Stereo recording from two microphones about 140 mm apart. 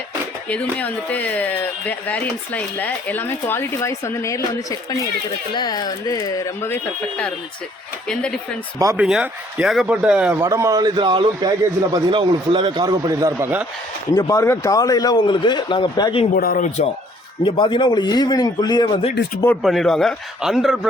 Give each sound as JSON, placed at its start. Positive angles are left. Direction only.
{"t": 0.4, "sound": "speech", "side_deg": 10}
{"t": 5.5, "sound": "speech", "side_deg": 30}
{"t": 8.0, "sound": "speech", "side_deg": 5}
{"t": 9.0, "sound": "a man's voice", "side_deg": -5}
{"t": 10.4, "sound": "a man's voice", "side_deg": -20}
{"t": 14.2, "sound": "speech", "side_deg": 30}
{"t": 16.3, "sound": "speech", "side_deg": 85}
{"t": 17.4, "sound": "speech", "side_deg": 35}
{"t": 19.6, "sound": "a man's voice", "side_deg": 0}